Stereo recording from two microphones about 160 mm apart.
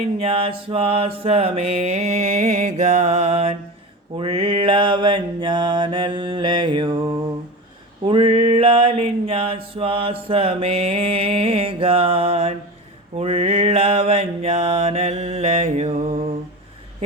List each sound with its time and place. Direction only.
0.2 s mantra: 35° right (ahead or behind)
8.0 s a sound: 35° right (ahead or behind)
13.1 s mantra: 40° right (ahead or behind)